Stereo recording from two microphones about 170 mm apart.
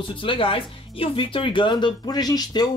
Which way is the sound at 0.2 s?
30° left (ahead or behind).